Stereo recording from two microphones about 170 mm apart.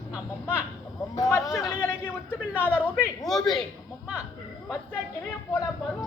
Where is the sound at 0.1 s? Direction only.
10° right (ahead or behind).